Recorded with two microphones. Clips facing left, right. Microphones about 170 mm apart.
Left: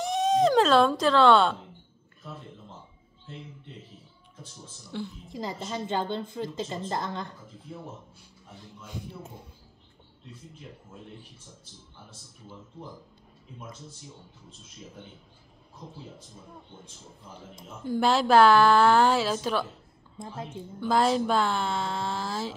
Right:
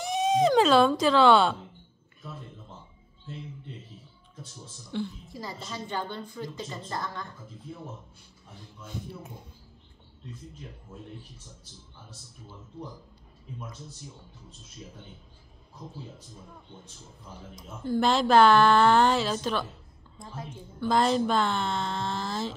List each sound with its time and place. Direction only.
0.0 s speech: centre (ahead or behind)
4.9 s speech: 5° left (ahead or behind)
5.3 s a woman's voice: 20° left (ahead or behind)
17.8 s speech: 10° left (ahead or behind)
20.8 s speech: 5° left (ahead or behind)